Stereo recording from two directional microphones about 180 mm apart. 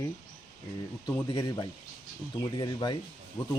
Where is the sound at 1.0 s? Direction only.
20° left (ahead or behind).